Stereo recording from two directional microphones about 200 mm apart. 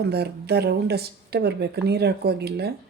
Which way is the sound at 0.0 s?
55° right (ahead or behind).